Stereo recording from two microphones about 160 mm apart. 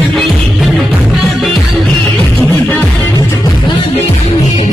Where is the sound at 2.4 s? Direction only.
10° left (ahead or behind).